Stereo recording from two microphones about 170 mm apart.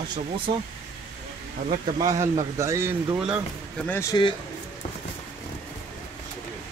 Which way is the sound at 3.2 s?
5° right (ahead or behind).